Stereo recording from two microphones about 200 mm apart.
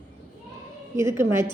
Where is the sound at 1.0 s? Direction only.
10° right (ahead or behind).